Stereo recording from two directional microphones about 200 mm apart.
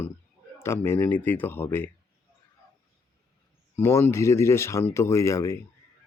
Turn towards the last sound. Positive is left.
turn(degrees=15)  # may be behind; listen again after turning